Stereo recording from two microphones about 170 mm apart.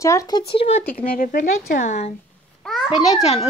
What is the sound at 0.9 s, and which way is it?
Speech, 55° left (ahead or behind).